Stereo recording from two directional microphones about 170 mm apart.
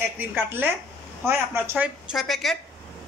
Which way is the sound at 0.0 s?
10° right (ahead or behind).